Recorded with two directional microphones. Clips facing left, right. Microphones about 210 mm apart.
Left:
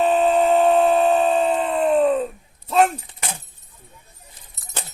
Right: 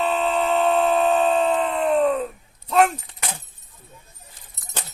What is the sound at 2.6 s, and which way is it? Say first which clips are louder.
Keys jangling: left 1 dB; 30° left (ahead or behind).